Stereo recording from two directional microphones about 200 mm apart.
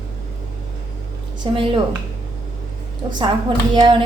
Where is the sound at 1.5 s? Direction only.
25° right (ahead or behind).